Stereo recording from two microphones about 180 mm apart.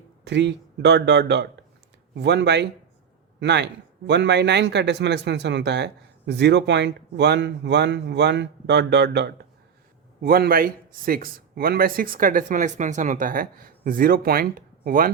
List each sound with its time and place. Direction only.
0.3 s speech: 75° right (ahead or behind)
10.2 s speech: 55° right (ahead or behind)